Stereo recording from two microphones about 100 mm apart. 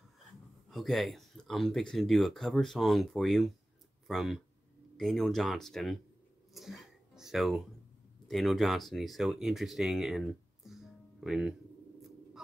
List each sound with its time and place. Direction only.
0.7 s speech: centre (ahead or behind)